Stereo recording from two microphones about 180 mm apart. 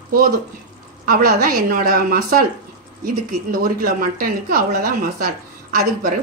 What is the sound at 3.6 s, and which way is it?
A woman's voice, 55° right (ahead or behind).